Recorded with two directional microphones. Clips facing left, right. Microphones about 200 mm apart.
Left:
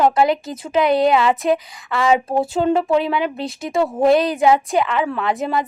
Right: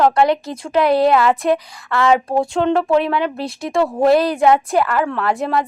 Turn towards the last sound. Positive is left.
turn(degrees=0)  # may be behind; listen again after turning